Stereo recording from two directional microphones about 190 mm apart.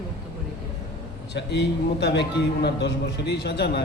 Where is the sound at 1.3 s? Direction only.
65° left (ahead or behind).